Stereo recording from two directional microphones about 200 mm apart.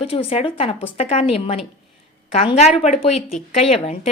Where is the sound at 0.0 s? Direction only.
30° left (ahead or behind).